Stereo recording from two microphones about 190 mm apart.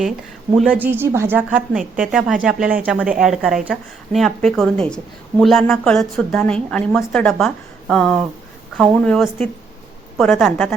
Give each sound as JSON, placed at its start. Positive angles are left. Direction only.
{"t": 0.5, "sound": "a woman's voice", "side_deg": -5}